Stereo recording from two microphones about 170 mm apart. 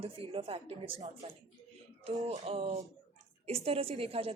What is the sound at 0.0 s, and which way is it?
A woman's voice, 35° right (ahead or behind).